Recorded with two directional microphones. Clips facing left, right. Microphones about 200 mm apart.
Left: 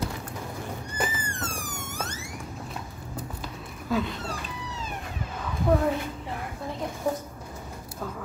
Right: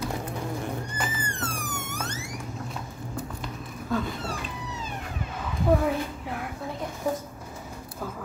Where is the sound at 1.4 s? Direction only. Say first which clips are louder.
Right 2 dB; 60° right (ahead or behind).